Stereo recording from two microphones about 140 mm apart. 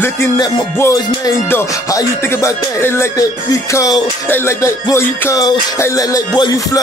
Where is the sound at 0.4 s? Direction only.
25° left (ahead or behind).